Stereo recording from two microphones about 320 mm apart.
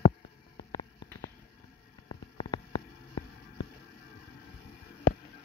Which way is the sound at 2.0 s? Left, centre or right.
Centre.